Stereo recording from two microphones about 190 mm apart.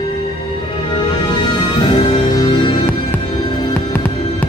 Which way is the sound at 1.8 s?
25° left (ahead or behind).